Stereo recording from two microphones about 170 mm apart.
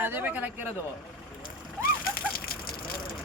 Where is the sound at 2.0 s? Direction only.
60° left (ahead or behind).